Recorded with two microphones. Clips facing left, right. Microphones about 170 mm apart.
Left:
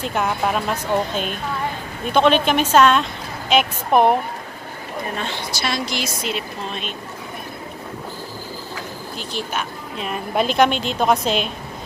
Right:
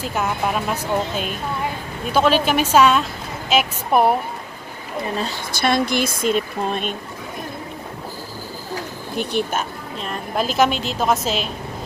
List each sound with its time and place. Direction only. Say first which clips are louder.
0.0 s a woman's voice: left 1 dB; centre (ahead or behind)
5.1 s a woman's voice: right 3 dB; 40° right (ahead or behind)
5.5 s speech: right 9 dB; 55° right (ahead or behind)
9.1 s speech: right 6 dB; 60° right (ahead or behind)
9.9 s a woman's voice: left 2 dB; 5° left (ahead or behind)